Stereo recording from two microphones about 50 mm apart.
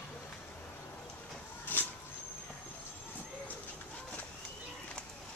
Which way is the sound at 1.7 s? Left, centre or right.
Left.